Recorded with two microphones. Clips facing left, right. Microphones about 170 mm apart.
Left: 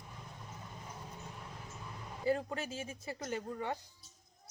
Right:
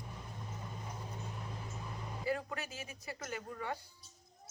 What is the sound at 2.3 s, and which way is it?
A woman's voice, 30° left (ahead or behind).